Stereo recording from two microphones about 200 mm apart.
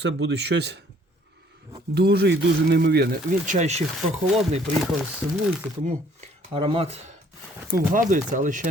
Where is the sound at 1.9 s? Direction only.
55° right (ahead or behind); by 3.8 s 35° right (ahead or behind).